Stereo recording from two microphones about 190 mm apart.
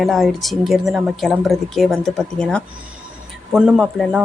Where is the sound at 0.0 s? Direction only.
Centre (ahead or behind).